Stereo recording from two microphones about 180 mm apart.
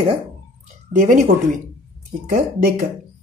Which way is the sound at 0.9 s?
45° right (ahead or behind).